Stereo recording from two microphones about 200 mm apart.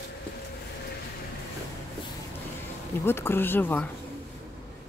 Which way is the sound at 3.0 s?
10° left (ahead or behind).